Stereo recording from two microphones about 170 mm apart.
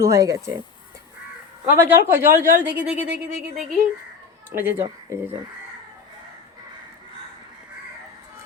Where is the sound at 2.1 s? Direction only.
15° right (ahead or behind).